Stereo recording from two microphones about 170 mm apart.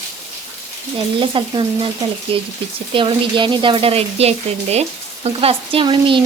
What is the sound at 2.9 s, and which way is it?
Speech, 30° right (ahead or behind).